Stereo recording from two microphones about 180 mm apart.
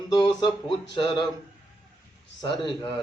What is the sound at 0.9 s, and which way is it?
Mantra, 25° left (ahead or behind).